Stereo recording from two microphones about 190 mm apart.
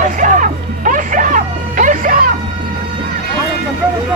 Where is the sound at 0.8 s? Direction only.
45° right (ahead or behind).